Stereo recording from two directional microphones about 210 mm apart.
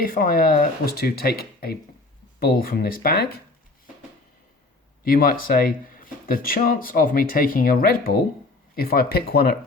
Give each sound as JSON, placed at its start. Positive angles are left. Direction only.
{"t": 0.0, "sound": "speech", "side_deg": 45}
{"t": 5.0, "sound": "speech", "side_deg": 45}